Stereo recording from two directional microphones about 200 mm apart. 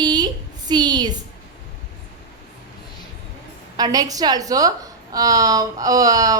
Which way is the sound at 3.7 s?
20° right (ahead or behind).